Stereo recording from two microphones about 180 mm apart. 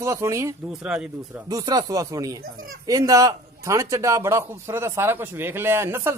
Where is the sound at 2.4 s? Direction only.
55° right (ahead or behind).